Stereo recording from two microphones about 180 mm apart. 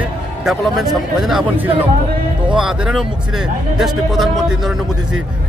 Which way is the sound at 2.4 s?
5° right (ahead or behind).